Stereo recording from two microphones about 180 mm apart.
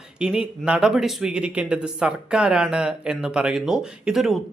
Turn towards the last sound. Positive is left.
turn(degrees=0)  # may be behind; listen again after turning